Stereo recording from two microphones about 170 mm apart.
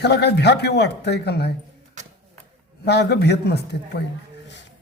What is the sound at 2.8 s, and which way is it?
Speech, 80° left.